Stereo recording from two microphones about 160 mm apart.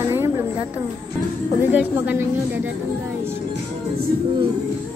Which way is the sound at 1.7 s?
10° right (ahead or behind).